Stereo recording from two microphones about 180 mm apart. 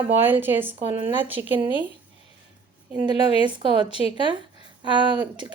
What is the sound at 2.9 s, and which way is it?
A woman's voice, 20° right (ahead or behind).